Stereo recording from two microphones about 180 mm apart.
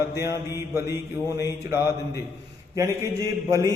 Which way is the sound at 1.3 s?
15° right (ahead or behind).